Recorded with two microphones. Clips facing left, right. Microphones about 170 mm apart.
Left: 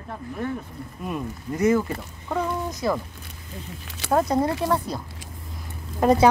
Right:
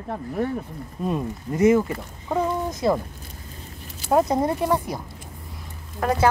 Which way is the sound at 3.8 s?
75° left (ahead or behind).